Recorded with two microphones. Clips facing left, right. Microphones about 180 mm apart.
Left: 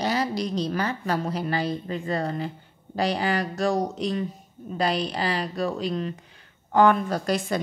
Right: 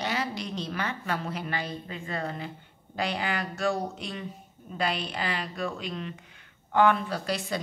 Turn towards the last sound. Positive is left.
turn(degrees=50)  # may be behind; listen again after turning